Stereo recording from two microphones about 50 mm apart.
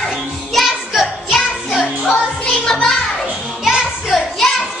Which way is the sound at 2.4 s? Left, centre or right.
Centre.